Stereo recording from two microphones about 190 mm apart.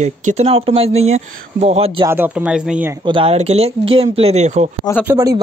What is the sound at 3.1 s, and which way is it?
Speech, 30° right (ahead or behind).